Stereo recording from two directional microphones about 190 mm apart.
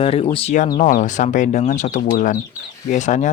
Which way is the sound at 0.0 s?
30° left (ahead or behind).